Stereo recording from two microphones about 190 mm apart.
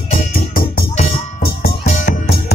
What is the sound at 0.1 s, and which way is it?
Music, 45° left (ahead or behind).